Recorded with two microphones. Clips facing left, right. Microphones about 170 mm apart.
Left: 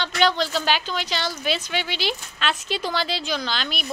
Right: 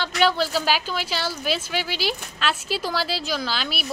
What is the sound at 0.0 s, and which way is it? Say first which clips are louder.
A woman's voice: even; 5° right (ahead or behind).